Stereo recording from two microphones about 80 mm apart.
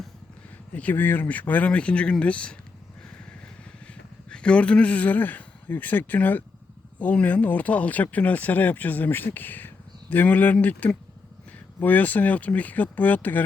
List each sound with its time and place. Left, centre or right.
0.7 s speech: centre
4.3 s speech: centre